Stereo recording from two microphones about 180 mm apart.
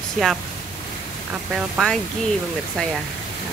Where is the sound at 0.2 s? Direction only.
Centre (ahead or behind).